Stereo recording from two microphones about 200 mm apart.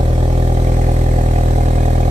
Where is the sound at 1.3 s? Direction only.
35° right (ahead or behind).